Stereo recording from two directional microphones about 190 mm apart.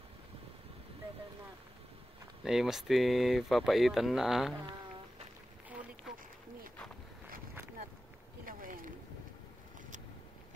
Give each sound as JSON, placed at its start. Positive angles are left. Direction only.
{"t": 2.4, "sound": "speech", "side_deg": 0}
{"t": 8.5, "sound": "boat", "side_deg": -45}